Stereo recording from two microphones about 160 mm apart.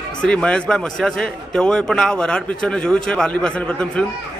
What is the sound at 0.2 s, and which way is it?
A man's voice, 5° left (ahead or behind).